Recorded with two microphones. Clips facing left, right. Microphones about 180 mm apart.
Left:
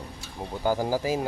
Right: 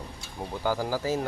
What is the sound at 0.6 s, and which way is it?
Speech, 15° left (ahead or behind).